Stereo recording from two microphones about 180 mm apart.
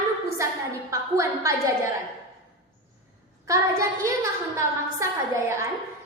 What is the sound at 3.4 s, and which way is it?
A woman's voice, 15° right (ahead or behind).